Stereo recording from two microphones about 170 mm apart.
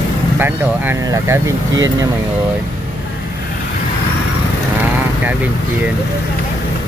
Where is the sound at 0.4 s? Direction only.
15° right (ahead or behind).